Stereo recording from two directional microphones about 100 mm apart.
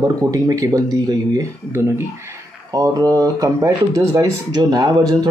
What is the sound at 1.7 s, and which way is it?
Speech, 25° right (ahead or behind).